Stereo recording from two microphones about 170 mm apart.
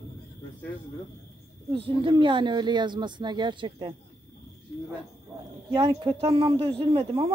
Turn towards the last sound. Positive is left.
turn(degrees=-35)  # may be behind; listen again after turning